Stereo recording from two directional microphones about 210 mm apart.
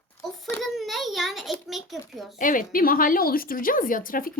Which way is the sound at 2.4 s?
40° left (ahead or behind).